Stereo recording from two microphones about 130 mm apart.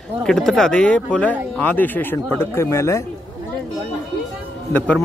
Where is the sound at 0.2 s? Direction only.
5° left (ahead or behind); by 3.0 s 20° left (ahead or behind).